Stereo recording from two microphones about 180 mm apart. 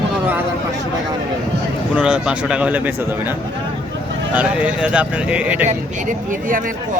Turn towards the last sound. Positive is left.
turn(degrees=-45)  # may be behind; listen again after turning